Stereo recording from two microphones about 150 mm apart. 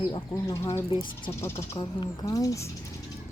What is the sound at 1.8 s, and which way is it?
Speech, 30° left (ahead or behind).